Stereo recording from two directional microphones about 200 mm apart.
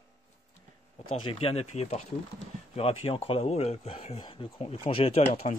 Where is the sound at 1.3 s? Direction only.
30° left (ahead or behind).